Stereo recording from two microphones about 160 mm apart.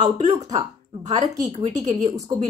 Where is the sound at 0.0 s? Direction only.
45° right (ahead or behind).